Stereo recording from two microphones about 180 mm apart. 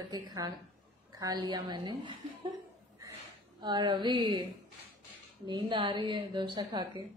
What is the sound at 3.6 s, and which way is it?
Speech, 25° right (ahead or behind).